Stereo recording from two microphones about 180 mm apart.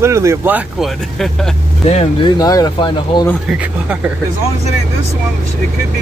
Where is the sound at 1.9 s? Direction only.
35° left (ahead or behind).